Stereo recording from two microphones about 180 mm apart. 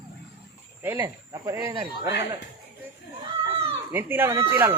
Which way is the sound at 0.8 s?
10° right (ahead or behind).